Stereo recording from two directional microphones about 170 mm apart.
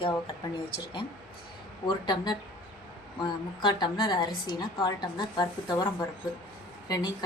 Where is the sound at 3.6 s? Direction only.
25° left (ahead or behind).